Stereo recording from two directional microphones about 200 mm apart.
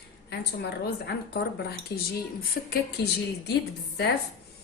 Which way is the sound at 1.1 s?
55° left (ahead or behind).